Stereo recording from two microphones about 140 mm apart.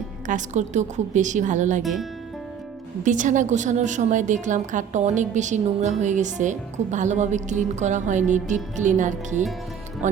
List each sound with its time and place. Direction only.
0.3 s a woman's voice: 60° right (ahead or behind)
1.8 s speech: centre (ahead or behind)
3.0 s a woman's voice: 65° right (ahead or behind)